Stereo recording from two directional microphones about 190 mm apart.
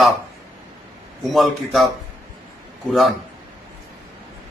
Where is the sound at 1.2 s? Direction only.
Centre (ahead or behind).